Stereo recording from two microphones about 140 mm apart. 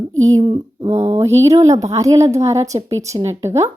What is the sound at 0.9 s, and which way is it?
Speech, 50° right (ahead or behind).